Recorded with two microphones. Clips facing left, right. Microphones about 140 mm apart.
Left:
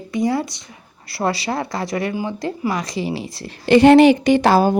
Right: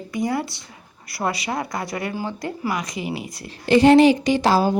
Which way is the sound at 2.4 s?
30° left (ahead or behind).